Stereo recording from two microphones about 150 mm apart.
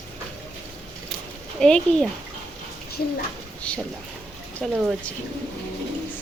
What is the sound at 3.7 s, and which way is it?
Speech, 5° left (ahead or behind).